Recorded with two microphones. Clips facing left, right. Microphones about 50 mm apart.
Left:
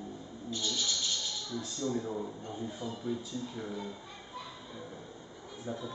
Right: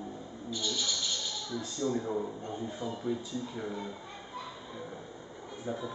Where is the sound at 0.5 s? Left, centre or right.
Centre.